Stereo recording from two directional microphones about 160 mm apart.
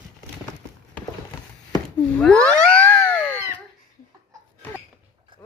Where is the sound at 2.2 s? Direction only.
5° left (ahead or behind).